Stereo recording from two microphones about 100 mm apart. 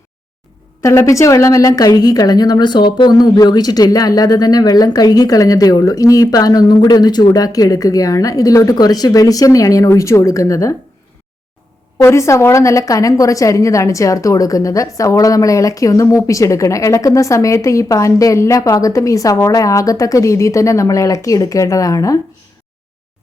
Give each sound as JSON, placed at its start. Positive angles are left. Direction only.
{"t": 0.8, "sound": "a woman's voice", "side_deg": 30}
{"t": 12.0, "sound": "a woman's voice", "side_deg": 30}